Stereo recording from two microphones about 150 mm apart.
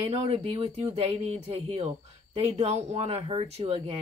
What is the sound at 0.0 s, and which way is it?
Speech, 45° right (ahead or behind).